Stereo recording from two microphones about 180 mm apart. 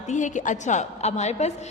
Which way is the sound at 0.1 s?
45° left (ahead or behind).